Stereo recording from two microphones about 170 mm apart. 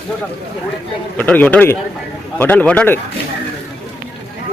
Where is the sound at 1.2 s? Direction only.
10° left (ahead or behind).